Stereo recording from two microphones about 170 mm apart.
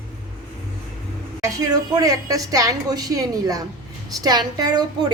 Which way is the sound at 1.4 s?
20° right (ahead or behind).